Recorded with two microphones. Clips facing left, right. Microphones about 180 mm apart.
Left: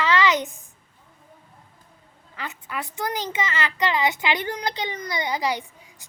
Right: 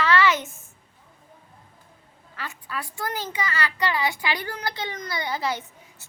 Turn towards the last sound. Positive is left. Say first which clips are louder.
# left 2 dB
turn(degrees=15)  # may be behind; listen again after turning